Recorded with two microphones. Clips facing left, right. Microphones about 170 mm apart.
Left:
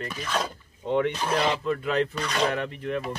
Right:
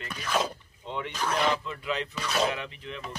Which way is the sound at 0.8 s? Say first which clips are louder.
Left 11 dB; 55° left (ahead or behind).